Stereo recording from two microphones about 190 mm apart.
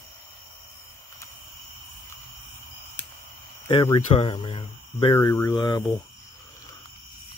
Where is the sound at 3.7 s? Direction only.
30° left (ahead or behind).